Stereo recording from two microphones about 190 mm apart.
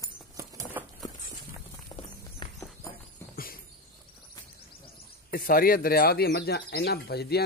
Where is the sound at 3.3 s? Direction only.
50° left (ahead or behind).